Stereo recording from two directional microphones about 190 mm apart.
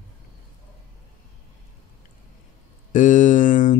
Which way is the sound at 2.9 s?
40° left (ahead or behind).